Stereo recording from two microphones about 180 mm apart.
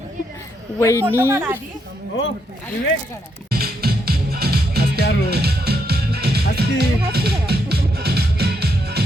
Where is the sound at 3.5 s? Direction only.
60° right (ahead or behind).